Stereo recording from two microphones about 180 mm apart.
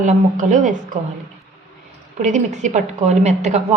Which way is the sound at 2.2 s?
40° right (ahead or behind).